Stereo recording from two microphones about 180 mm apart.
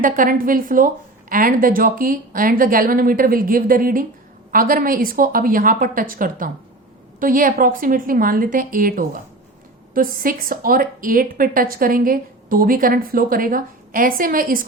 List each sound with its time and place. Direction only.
0.0 s a woman's voice: 50° right (ahead or behind)